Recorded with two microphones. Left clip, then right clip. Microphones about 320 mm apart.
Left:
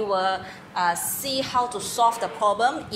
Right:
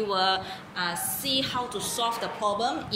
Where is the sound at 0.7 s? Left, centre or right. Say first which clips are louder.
Left 7 dB; centre.